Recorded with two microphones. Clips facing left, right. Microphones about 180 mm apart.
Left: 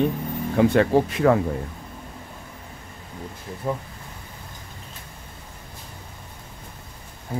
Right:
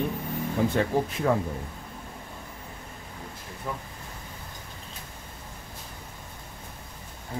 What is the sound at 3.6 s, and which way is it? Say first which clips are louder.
Speech: left 8 dB; 35° left (ahead or behind).